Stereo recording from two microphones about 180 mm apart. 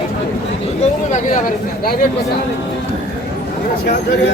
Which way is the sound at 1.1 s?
50° left (ahead or behind).